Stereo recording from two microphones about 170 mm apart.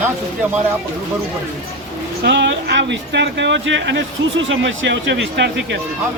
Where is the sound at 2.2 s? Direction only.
90° right.